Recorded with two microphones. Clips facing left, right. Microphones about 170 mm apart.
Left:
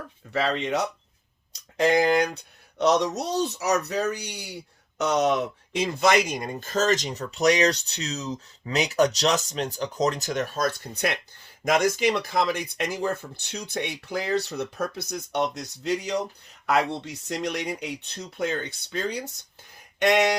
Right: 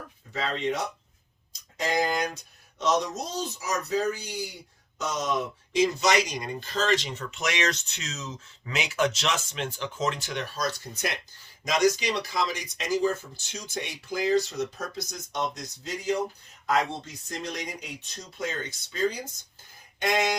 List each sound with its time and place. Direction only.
0.3 s speech: 75° left (ahead or behind)
1.5 s speech: 65° left (ahead or behind)
17.2 s speech: 70° left (ahead or behind)